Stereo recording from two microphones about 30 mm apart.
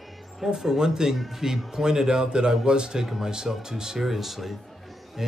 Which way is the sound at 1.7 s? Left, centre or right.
Centre.